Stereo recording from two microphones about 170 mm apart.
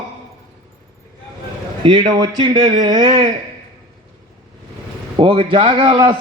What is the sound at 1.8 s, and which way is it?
A man's voice, 30° right (ahead or behind).